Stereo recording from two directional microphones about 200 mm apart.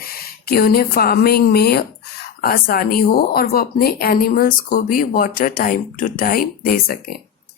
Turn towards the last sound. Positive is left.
turn(degrees=50)  # may be behind; listen again after turning